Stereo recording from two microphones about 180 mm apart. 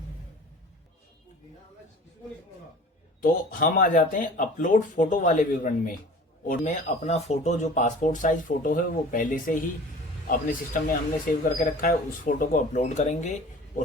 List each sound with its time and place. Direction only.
3.2 s speech: 50° left (ahead or behind)